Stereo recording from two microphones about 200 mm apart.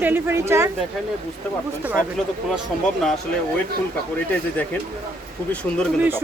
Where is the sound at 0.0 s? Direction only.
10° right (ahead or behind).